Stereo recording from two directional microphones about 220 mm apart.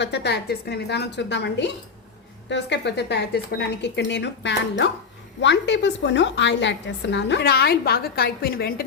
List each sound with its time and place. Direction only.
0.0 s a woman's voice: 50° left (ahead or behind)